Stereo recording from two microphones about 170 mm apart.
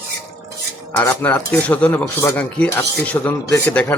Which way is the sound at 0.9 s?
10° left (ahead or behind).